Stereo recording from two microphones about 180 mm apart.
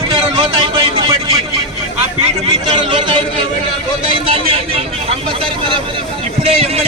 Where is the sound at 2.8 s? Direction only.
25° right (ahead or behind).